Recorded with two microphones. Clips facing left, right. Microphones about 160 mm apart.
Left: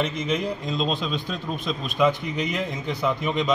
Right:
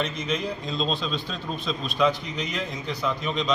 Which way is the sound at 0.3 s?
10° left (ahead or behind).